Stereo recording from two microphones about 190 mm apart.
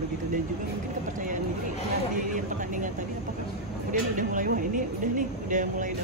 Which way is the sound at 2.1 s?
45° right (ahead or behind).